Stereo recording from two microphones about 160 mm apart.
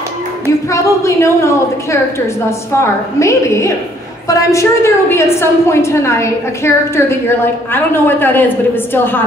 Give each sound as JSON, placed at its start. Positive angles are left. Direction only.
{"t": 0.7, "sound": "a woman's voice", "side_deg": 20}